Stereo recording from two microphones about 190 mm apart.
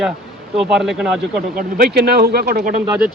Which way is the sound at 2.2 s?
55° right (ahead or behind).